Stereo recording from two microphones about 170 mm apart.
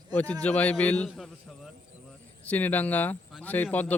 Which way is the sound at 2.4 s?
10° left (ahead or behind).